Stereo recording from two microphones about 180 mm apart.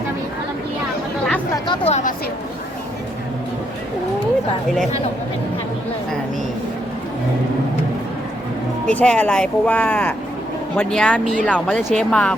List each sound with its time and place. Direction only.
1.5 s chatter: 25° left (ahead or behind)
1.9 s a woman's voice: 45° left (ahead or behind)
8.9 s speech: 5° left (ahead or behind)